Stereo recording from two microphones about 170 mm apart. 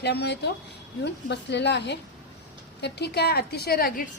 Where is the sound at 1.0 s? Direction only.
90° left.